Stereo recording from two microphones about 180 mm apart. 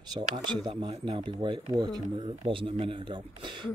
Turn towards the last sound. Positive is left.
turn(degrees=-25)  # may be behind; listen again after turning